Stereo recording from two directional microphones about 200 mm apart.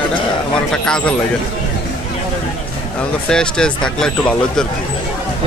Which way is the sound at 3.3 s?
5° left (ahead or behind).